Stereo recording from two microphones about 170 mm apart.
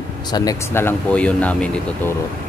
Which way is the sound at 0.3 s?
20° left (ahead or behind).